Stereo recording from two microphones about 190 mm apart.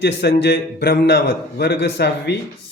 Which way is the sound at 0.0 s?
60° left (ahead or behind).